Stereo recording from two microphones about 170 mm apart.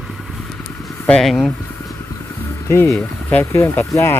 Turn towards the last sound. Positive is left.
turn(degrees=15)  # may be behind; listen again after turning